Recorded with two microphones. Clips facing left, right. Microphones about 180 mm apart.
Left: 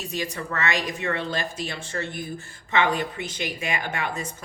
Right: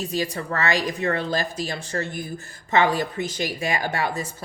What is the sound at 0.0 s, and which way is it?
Speech, 35° right (ahead or behind).